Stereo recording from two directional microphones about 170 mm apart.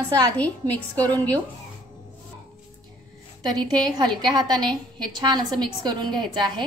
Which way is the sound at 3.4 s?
25° right (ahead or behind).